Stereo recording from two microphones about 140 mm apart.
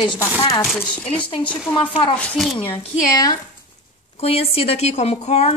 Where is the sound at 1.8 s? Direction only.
40° left (ahead or behind).